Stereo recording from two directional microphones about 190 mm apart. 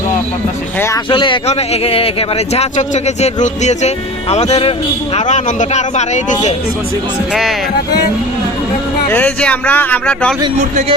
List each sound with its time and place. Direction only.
0.8 s speech: 15° left (ahead or behind)
1.1 s speech: 25° left (ahead or behind)
9.0 s speech: 10° left (ahead or behind)